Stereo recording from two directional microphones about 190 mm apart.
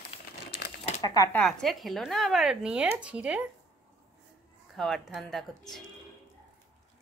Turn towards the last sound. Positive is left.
turn(degrees=0)  # may be behind; listen again after turning